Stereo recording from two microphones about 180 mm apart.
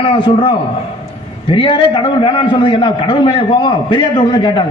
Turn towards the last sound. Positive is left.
turn(degrees=25)  # may be behind; listen again after turning